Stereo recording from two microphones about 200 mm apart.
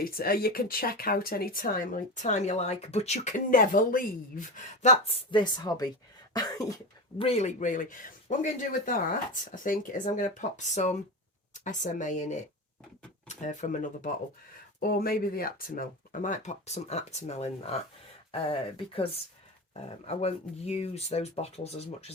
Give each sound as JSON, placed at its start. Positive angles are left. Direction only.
{"t": 0.0, "sound": "speech", "side_deg": 45}
{"t": 7.2, "sound": "speech", "side_deg": 30}